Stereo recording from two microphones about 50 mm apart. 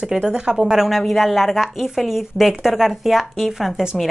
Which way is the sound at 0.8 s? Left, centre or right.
Centre.